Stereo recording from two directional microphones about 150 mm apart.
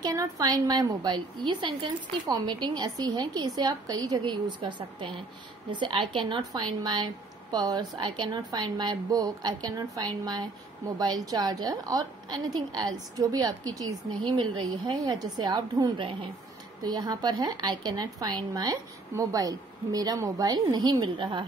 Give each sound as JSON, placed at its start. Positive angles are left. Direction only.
{"t": 0.0, "sound": "a woman's voice", "side_deg": -25}